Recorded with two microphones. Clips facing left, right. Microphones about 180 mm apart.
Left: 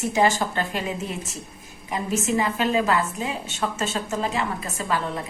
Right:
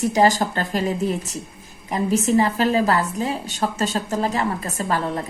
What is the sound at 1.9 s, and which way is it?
A woman's voice, 40° right (ahead or behind).